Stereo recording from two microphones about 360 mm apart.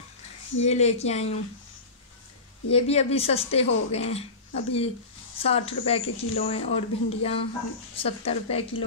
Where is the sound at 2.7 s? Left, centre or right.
Centre.